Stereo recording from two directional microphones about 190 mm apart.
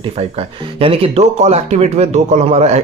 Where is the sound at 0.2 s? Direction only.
30° right (ahead or behind).